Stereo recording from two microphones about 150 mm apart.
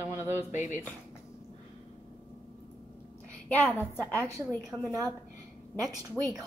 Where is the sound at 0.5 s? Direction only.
55° left (ahead or behind).